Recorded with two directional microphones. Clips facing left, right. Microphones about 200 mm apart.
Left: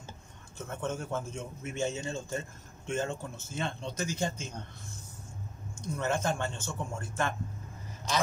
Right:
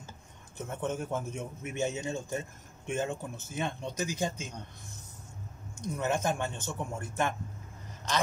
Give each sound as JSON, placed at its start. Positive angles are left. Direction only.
{"t": 0.6, "sound": "a man's voice", "side_deg": -15}
{"t": 5.9, "sound": "a man's voice", "side_deg": -15}